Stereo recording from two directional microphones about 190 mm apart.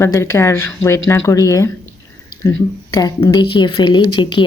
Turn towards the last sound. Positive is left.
turn(degrees=25)  # may be behind; listen again after turning